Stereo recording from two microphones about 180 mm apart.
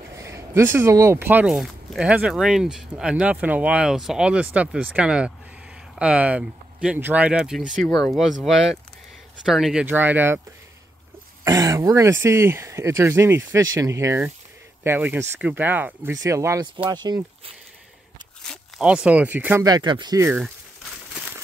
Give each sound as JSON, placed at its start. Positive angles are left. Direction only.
{"t": 0.2, "sound": "speech", "side_deg": -15}
{"t": 11.4, "sound": "speech", "side_deg": -15}
{"t": 18.5, "sound": "speech", "side_deg": -5}
{"t": 19.6, "sound": "speech", "side_deg": -25}
{"t": 20.2, "sound": "speech", "side_deg": -5}